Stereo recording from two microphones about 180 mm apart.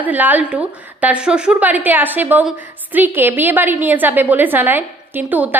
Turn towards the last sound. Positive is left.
turn(degrees=-10)  # may be behind; listen again after turning